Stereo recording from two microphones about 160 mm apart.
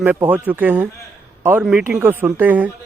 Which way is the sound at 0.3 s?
10° right (ahead or behind).